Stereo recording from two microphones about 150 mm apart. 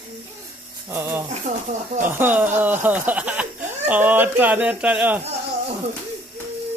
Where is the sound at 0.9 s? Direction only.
15° right (ahead or behind).